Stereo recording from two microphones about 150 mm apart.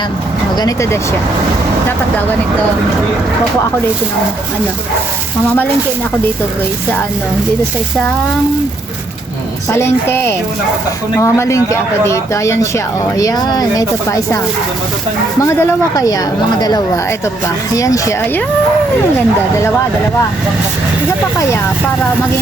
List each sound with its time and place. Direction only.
0.5 s speech: 25° left (ahead or behind)
9.6 s a woman's voice: 20° left (ahead or behind)